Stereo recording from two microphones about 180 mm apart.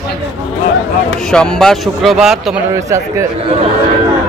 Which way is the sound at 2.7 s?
15° right (ahead or behind).